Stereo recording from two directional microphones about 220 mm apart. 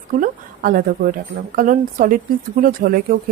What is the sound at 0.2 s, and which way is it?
A woman's voice, 40° right (ahead or behind).